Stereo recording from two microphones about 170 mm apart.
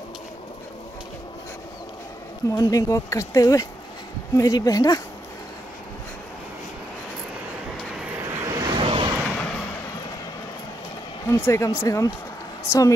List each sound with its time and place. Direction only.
2.5 s speech: 20° left (ahead or behind)
8.2 s vehicle: 15° right (ahead or behind); by 9.1 s 30° right (ahead or behind)
9.4 s a sound: 5° left (ahead or behind)
11.2 s speech: 15° left (ahead or behind)